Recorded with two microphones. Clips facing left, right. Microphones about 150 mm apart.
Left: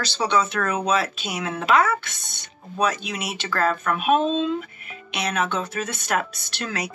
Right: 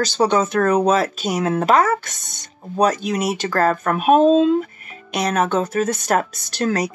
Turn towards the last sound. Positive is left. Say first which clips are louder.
# right 9 dB
turn(degrees=-40)  # may be behind; listen again after turning